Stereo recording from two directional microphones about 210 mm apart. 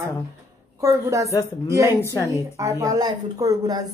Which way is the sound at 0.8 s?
15° right (ahead or behind).